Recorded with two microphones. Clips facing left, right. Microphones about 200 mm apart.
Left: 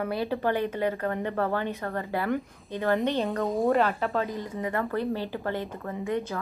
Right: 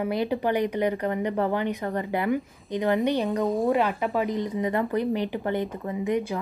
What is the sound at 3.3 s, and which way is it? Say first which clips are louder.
Speech: right 2 dB; centre (ahead or behind).